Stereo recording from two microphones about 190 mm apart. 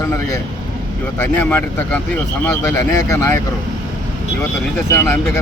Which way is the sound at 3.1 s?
15° left (ahead or behind).